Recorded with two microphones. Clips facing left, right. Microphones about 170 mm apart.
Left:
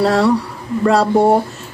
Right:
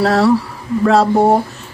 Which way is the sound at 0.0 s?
Centre (ahead or behind).